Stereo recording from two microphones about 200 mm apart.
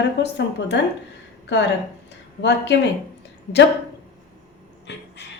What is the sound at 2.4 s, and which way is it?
Speech, 60° left (ahead or behind).